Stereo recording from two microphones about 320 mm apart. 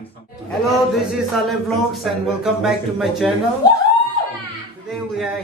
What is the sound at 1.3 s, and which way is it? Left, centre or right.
Speech, centre.